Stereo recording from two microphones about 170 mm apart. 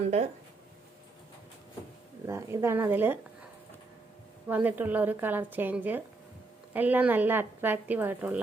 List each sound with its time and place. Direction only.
0.0 s speech: 40° right (ahead or behind)
2.2 s a woman's voice: 15° right (ahead or behind)
4.4 s a woman's voice: 10° right (ahead or behind)